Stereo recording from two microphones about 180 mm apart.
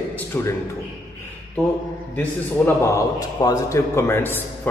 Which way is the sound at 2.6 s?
10° left (ahead or behind).